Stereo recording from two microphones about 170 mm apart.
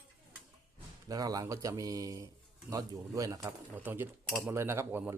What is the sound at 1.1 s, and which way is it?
A man's voice, 20° right (ahead or behind).